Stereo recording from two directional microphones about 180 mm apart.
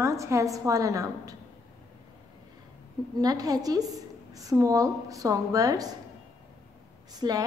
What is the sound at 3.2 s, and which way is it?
A woman's voice, 20° right (ahead or behind).